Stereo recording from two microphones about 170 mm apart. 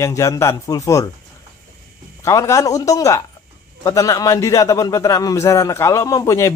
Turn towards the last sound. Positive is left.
turn(degrees=20)  # may be behind; listen again after turning